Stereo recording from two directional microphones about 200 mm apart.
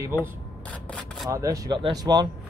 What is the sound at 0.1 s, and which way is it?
Speech, 10° right (ahead or behind).